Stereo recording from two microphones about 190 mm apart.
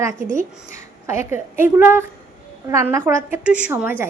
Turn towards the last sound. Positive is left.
turn(degrees=-10)  # may be behind; listen again after turning